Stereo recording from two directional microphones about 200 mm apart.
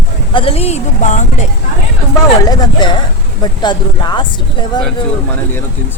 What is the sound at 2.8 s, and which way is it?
Speech, 25° left (ahead or behind).